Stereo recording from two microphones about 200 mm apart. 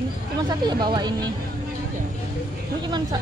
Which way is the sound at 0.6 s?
20° right (ahead or behind).